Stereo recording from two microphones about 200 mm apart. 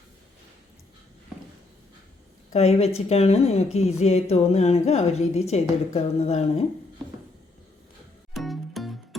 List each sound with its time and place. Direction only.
2.5 s a woman's voice: 30° left (ahead or behind)
8.4 s music: centre (ahead or behind)